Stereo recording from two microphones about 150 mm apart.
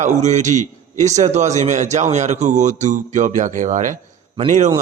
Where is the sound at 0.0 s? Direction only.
50° right (ahead or behind).